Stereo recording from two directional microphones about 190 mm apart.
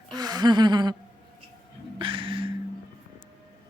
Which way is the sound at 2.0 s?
25° right (ahead or behind).